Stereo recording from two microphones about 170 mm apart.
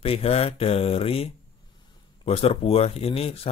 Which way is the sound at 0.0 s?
35° left (ahead or behind).